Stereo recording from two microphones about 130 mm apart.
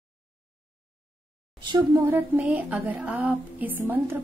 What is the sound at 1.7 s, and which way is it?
Speech, 30° right (ahead or behind).